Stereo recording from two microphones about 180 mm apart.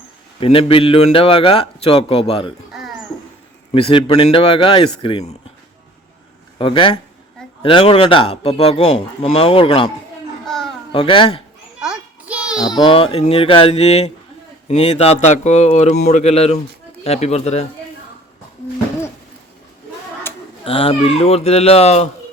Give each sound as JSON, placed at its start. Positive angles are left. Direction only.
{"t": 0.3, "sound": "speech", "side_deg": 30}
{"t": 3.7, "sound": "speech", "side_deg": 30}
{"t": 6.6, "sound": "a man's voice", "side_deg": 30}
{"t": 10.4, "sound": "babbling", "side_deg": 0}
{"t": 10.9, "sound": "a man's voice", "side_deg": 30}
{"t": 11.8, "sound": "a sound", "side_deg": -5}
{"t": 12.7, "sound": "speech", "side_deg": 30}
{"t": 20.3, "sound": "a sound", "side_deg": 10}
{"t": 20.7, "sound": "speech", "side_deg": 30}